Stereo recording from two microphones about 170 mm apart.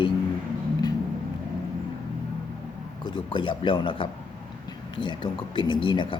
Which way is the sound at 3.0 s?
25° left (ahead or behind).